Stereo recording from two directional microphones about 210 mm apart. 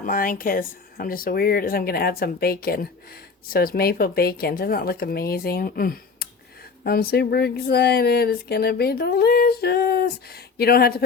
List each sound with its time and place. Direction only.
0.0 s speech: 40° left (ahead or behind)